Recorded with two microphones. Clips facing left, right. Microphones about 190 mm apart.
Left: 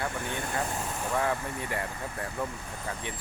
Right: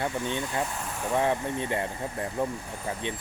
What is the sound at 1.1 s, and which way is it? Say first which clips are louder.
Speech: right 5 dB; 20° right (ahead or behind).